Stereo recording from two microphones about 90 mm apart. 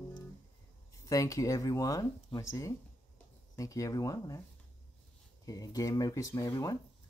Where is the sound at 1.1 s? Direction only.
40° left (ahead or behind).